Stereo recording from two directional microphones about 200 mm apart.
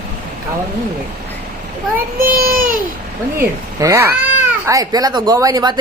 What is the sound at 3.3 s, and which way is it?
A woman's voice, 15° right (ahead or behind).